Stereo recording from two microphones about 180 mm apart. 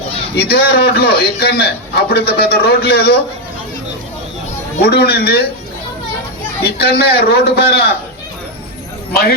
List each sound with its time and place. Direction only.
0.3 s a man's voice: 60° left (ahead or behind)
4.8 s a man's voice: 65° left (ahead or behind)
6.7 s a man's voice: 60° left (ahead or behind)